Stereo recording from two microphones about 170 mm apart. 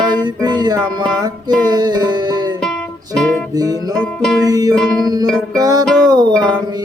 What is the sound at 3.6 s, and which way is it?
Music, 20° right (ahead or behind).